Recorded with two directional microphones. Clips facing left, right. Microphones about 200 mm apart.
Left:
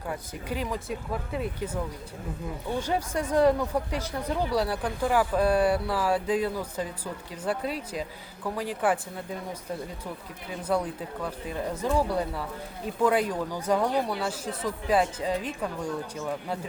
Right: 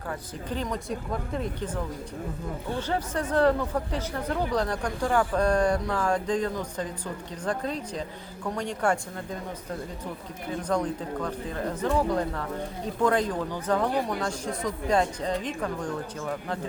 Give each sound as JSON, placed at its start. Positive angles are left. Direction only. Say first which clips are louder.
{"t": 0.1, "sound": "speech", "louder": "even", "side_deg": 10}
{"t": 10.6, "sound": "speech", "louder": "even", "side_deg": 10}